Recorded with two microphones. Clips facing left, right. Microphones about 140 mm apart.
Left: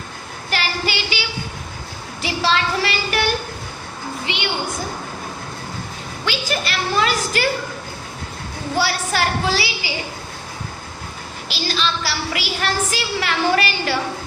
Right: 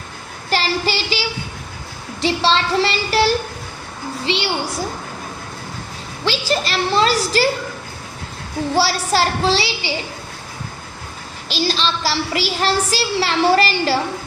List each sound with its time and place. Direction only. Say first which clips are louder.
0.5 s child singing: right 4 dB; 35° right (ahead or behind)
2.2 s a woman's voice: right 3 dB; 30° right (ahead or behind)
4.3 s a child's voice: right 7 dB; 30° right (ahead or behind)
6.2 s a woman's voice: right 4 dB; 35° right (ahead or behind)
8.7 s a woman's voice: right 3 dB; 35° right (ahead or behind)
11.4 s a woman's voice: right 3 dB; 35° right (ahead or behind)